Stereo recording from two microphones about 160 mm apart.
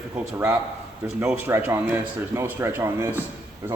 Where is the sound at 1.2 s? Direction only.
15° right (ahead or behind).